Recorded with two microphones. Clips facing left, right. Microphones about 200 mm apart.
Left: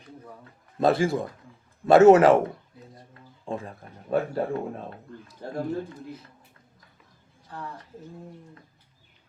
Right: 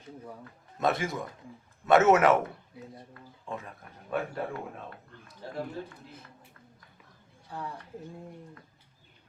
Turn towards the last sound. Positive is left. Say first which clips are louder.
# even
turn(degrees=-10)  # may be behind; listen again after turning